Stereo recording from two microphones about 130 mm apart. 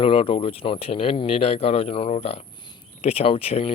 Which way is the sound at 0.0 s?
45° left (ahead or behind).